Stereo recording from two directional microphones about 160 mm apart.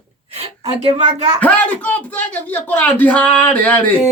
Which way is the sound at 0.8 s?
45° right (ahead or behind).